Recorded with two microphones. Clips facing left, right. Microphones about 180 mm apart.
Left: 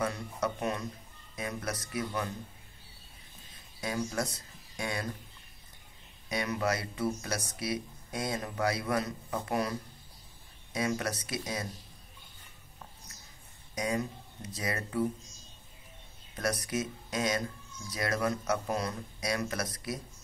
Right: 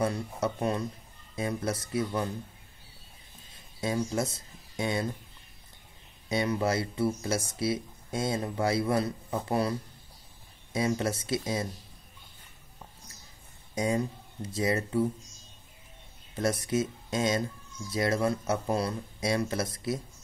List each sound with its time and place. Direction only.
0.0 s speech: 30° right (ahead or behind)
3.8 s speech: 25° right (ahead or behind)
6.2 s speech: 25° right (ahead or behind)
13.7 s speech: 30° right (ahead or behind)
16.3 s speech: 25° right (ahead or behind)